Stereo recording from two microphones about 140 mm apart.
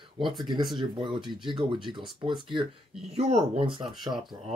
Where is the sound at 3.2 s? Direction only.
50° right (ahead or behind).